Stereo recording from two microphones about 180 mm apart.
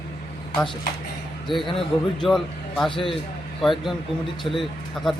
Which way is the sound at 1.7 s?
30° left (ahead or behind).